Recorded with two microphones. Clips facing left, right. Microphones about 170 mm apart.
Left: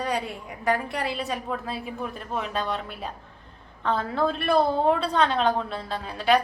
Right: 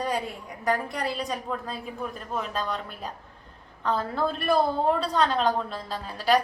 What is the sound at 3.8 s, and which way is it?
A woman's voice, 5° right (ahead or behind).